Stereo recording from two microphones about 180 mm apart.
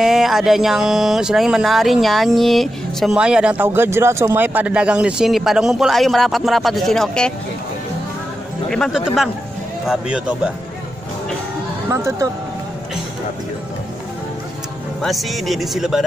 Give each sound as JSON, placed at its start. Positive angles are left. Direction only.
{"t": 0.0, "sound": "speech", "side_deg": 0}
{"t": 8.6, "sound": "speech", "side_deg": 0}
{"t": 11.9, "sound": "speech", "side_deg": -15}
{"t": 15.0, "sound": "speech", "side_deg": 0}